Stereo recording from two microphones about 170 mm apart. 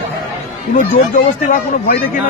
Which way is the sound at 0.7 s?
50° left (ahead or behind).